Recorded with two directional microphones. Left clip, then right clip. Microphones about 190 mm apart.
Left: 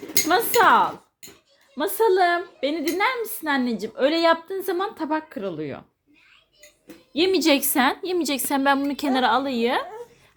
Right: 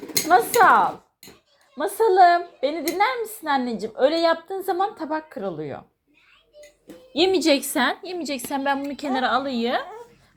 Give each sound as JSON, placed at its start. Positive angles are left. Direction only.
{"t": 0.3, "sound": "a woman's voice", "side_deg": 25}
{"t": 7.1, "sound": "a woman's voice", "side_deg": 15}
{"t": 8.0, "sound": "a woman's voice", "side_deg": 25}